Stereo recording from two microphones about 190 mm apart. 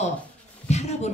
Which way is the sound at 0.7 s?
35° left (ahead or behind).